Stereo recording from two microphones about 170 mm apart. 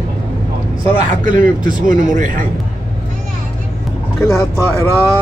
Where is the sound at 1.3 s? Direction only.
55° right (ahead or behind).